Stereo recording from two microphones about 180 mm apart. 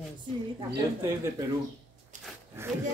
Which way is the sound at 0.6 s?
25° right (ahead or behind).